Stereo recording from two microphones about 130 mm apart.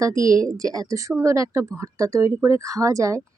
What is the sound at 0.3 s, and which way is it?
Speech, 25° right (ahead or behind).